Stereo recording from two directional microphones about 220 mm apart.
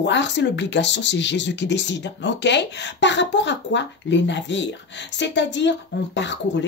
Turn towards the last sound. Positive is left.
turn(degrees=55)  # may be behind; listen again after turning